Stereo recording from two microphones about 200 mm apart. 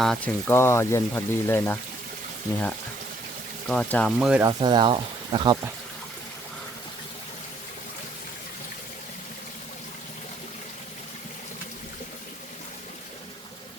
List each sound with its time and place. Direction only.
0.0 s speech: centre (ahead or behind)
0.5 s speech: 10° left (ahead or behind)
3.7 s speech: 5° left (ahead or behind)
4.4 s speech: 20° right (ahead or behind)